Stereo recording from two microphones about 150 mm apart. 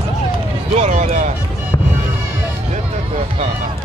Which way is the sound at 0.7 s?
50° right (ahead or behind).